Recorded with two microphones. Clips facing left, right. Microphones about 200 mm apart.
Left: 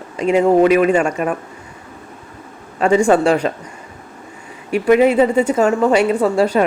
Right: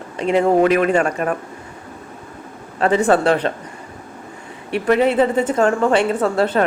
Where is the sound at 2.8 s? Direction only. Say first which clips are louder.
Left 2 dB; 10° left (ahead or behind).